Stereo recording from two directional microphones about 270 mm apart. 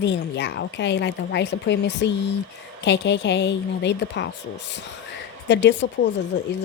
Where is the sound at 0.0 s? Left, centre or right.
Left.